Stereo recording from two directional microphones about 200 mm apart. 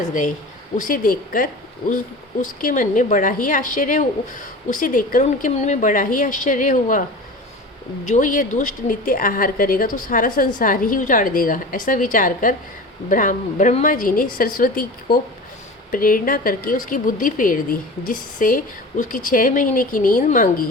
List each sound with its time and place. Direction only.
0.8 s a woman's voice: 45° left (ahead or behind)
8.0 s a woman's voice: 40° left (ahead or behind)